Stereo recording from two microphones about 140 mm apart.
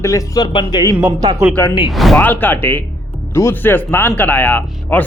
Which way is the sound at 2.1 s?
15° left (ahead or behind).